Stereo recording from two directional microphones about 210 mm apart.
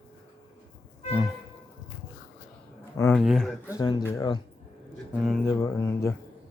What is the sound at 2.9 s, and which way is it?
Speech, 10° left (ahead or behind).